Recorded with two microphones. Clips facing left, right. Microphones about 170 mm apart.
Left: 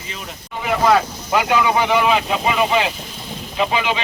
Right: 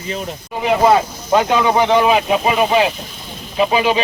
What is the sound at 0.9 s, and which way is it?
Speech, 25° right (ahead or behind).